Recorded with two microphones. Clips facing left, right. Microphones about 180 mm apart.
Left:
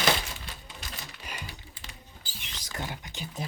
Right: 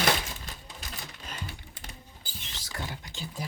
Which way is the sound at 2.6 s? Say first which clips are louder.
Left 2 dB; 20° left (ahead or behind).